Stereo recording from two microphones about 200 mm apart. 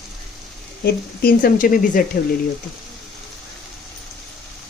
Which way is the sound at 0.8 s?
45° left (ahead or behind).